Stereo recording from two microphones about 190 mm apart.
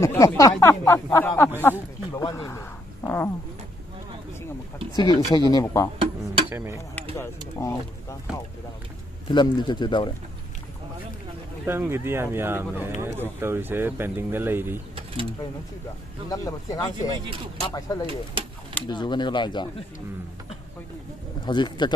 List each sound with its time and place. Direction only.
0.0 s speech: 15° left (ahead or behind)
2.3 s a sound: 15° left (ahead or behind)
4.9 s speech: 20° left (ahead or behind)
5.9 s music: 30° right (ahead or behind)
6.5 s speech: 10° right (ahead or behind)
7.0 s a sound: 15° left (ahead or behind)
9.3 s speech: 25° left (ahead or behind)
11.6 s speech: 10° right (ahead or behind)
16.3 s speech: 20° left (ahead or behind)
17.1 s speech: 25° right (ahead or behind)
17.7 s speech: 20° left (ahead or behind)
21.5 s speech: 25° left (ahead or behind)